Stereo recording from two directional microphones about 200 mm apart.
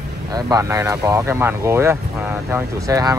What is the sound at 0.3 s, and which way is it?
Speech, 20° right (ahead or behind).